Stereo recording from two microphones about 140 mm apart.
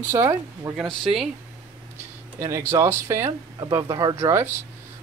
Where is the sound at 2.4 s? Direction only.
20° right (ahead or behind).